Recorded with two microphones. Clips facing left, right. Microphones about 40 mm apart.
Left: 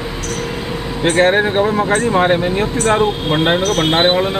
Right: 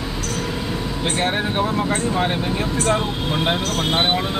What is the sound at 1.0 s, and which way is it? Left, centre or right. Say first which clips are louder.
Speech: left 10 dB; left.